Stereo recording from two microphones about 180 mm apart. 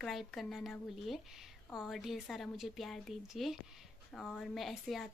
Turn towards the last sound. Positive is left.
turn(degrees=0)  # may be behind; listen again after turning